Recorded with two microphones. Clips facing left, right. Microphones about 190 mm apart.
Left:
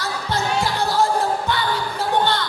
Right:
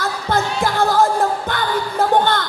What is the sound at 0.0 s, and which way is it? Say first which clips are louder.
Music: right 4 dB; 50° right (ahead or behind).